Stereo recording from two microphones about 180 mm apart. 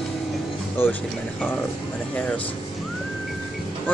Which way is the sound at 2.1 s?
5° left (ahead or behind).